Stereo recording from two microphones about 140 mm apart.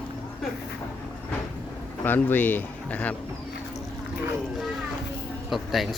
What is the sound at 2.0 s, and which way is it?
A man's voice, 15° left (ahead or behind).